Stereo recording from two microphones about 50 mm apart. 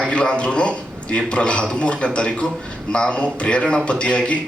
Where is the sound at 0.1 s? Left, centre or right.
Left.